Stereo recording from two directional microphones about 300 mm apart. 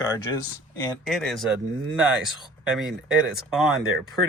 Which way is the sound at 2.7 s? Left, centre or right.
Centre.